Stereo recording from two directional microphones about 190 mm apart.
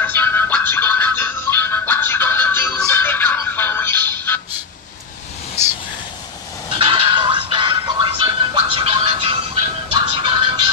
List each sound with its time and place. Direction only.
0.0 s music: 10° left (ahead or behind)
6.8 s music: 30° right (ahead or behind)